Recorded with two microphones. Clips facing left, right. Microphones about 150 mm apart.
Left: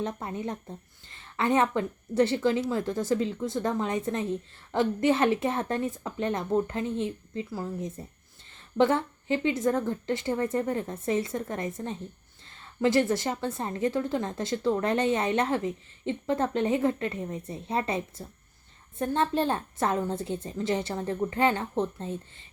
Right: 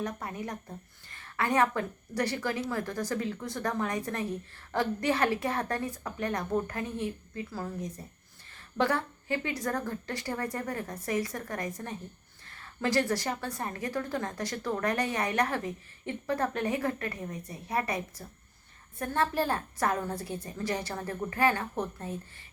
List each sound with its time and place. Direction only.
0.0 s a woman's voice: 25° left (ahead or behind)